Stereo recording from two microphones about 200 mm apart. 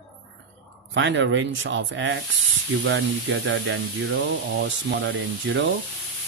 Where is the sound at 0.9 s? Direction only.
65° right (ahead or behind).